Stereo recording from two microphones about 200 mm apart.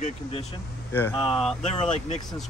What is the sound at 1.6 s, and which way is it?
Speech, 35° left (ahead or behind).